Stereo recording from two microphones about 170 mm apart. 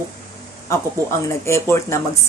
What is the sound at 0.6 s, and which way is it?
Speech, 15° left (ahead or behind).